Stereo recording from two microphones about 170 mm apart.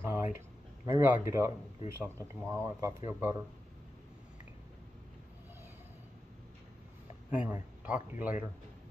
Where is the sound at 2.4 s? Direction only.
20° right (ahead or behind).